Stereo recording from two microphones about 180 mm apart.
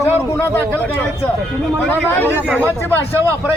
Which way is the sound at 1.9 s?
10° left (ahead or behind).